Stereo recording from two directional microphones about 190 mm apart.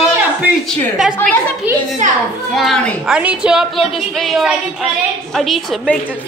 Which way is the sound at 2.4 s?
Centre (ahead or behind).